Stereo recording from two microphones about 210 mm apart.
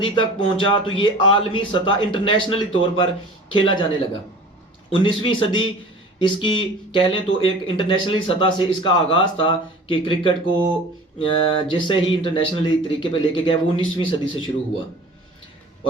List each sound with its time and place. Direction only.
0.0 s speech: 25° left (ahead or behind)
4.9 s speech: 25° left (ahead or behind)